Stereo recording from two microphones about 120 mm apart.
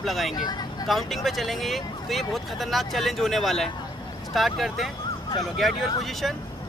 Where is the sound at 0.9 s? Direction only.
Centre (ahead or behind).